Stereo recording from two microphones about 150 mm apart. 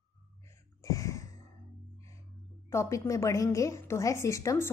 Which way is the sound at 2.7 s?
20° left (ahead or behind).